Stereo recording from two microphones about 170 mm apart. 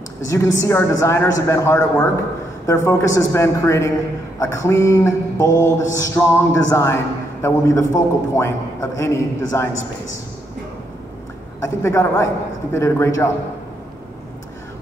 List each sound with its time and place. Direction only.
0.3 s a man's voice: 20° left (ahead or behind)
11.6 s a man's voice: 15° left (ahead or behind)